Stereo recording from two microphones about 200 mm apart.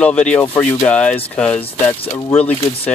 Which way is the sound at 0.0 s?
5° left (ahead or behind).